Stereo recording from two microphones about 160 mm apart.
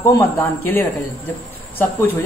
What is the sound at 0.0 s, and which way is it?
Speech, 15° left (ahead or behind).